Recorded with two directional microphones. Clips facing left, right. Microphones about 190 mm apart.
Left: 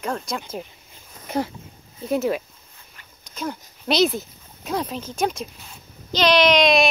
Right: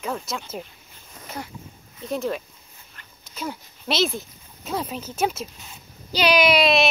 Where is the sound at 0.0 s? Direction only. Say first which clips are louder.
Left 2 dB; 5° right (ahead or behind).